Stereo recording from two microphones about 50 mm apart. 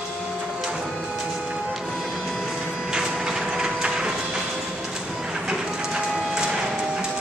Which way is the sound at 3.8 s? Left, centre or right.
Centre.